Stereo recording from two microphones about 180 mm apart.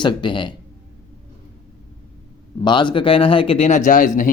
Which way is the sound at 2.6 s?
25° left (ahead or behind).